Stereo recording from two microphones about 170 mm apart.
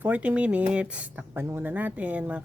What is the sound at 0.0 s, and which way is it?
Speech, 10° right (ahead or behind).